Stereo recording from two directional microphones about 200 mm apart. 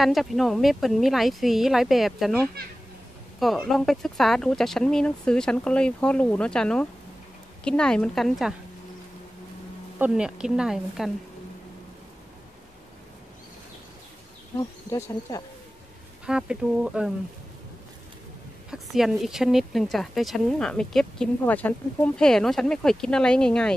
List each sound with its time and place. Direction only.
0.0 s a woman's voice: centre (ahead or behind)
9.9 s a woman's voice: 5° right (ahead or behind)
14.6 s speech: 20° left (ahead or behind)
16.3 s a woman's voice: 5° right (ahead or behind)
18.7 s a woman's voice: centre (ahead or behind)